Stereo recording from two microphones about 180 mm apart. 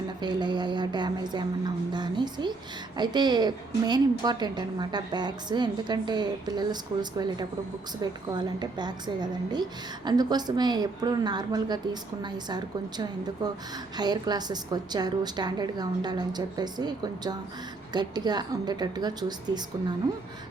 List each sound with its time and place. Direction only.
0.2 s a woman's voice: 25° right (ahead or behind)